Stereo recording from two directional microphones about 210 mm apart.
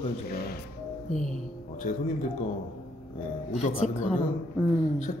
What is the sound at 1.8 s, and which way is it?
Speech, 35° left (ahead or behind).